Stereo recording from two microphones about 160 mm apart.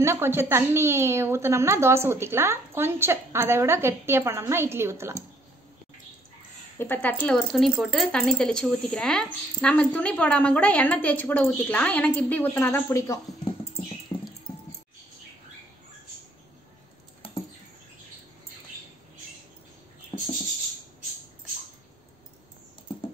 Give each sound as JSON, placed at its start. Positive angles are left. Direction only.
{"t": 0.0, "sound": "a woman's voice", "side_deg": -15}
{"t": 6.8, "sound": "speech", "side_deg": 10}
{"t": 14.1, "sound": "a sound", "side_deg": 15}